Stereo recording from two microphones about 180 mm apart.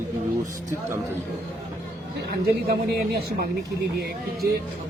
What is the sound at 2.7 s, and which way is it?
Speech, 60° right (ahead or behind).